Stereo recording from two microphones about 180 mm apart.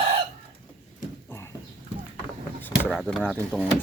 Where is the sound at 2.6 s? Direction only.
10° left (ahead or behind).